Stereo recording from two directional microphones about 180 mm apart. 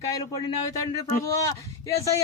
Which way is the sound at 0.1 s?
20° left (ahead or behind).